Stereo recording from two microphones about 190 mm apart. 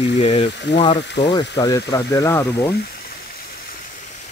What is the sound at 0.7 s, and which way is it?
Speech, 65° left (ahead or behind).